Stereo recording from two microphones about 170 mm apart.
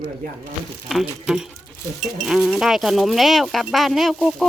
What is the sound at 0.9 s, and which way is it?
Speech, 5° right (ahead or behind).